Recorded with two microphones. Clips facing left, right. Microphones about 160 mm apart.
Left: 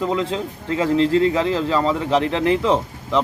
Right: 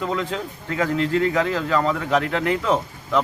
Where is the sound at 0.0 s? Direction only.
30° left (ahead or behind).